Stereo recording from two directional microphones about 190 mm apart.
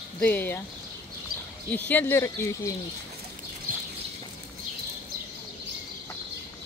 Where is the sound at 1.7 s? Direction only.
10° left (ahead or behind).